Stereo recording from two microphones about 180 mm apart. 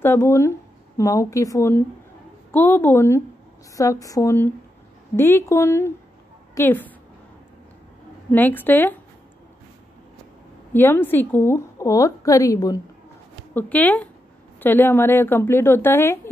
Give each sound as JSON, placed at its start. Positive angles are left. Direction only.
{"t": 0.0, "sound": "a woman's voice", "side_deg": 15}
{"t": 8.3, "sound": "a woman's voice", "side_deg": 10}
{"t": 10.7, "sound": "a woman's voice", "side_deg": 10}
{"t": 13.6, "sound": "a woman's voice", "side_deg": 10}